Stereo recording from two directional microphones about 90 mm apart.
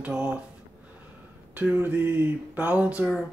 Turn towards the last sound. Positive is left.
turn(degrees=-15)  # may be behind; listen again after turning